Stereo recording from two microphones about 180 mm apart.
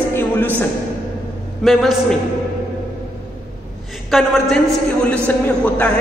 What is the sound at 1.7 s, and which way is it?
Speech, centre (ahead or behind).